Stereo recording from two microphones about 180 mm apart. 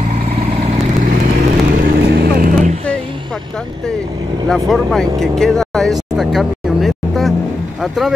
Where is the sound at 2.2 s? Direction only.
45° right (ahead or behind).